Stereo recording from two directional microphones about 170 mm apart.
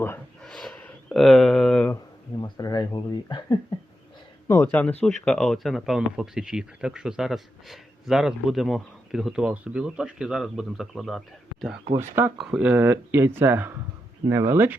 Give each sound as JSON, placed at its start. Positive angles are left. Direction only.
{"t": 0.4, "sound": "a sound", "side_deg": 0}
{"t": 2.4, "sound": "speech", "side_deg": 20}
{"t": 4.4, "sound": "speech", "side_deg": 15}
{"t": 11.9, "sound": "speech", "side_deg": -15}